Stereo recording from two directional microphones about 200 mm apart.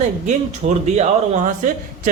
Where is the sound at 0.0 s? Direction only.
35° right (ahead or behind).